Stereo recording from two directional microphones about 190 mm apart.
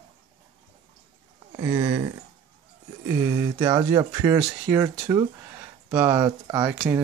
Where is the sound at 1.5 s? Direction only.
20° right (ahead or behind).